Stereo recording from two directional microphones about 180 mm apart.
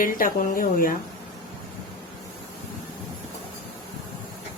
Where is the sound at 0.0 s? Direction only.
50° left (ahead or behind).